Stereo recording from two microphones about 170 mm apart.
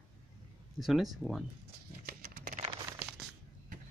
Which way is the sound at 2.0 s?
60° right (ahead or behind).